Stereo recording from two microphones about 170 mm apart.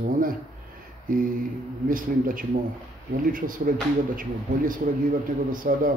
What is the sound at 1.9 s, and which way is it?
Speech, 55° right (ahead or behind).